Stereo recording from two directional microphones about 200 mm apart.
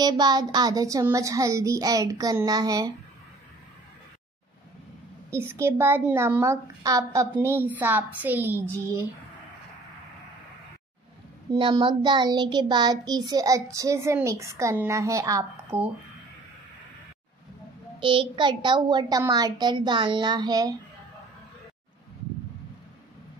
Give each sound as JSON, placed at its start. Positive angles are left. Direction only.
{"t": 0.0, "sound": "child singing", "side_deg": -20}
{"t": 5.3, "sound": "child singing", "side_deg": -10}
{"t": 11.5, "sound": "child singing", "side_deg": -25}
{"t": 17.9, "sound": "a child's voice", "side_deg": -25}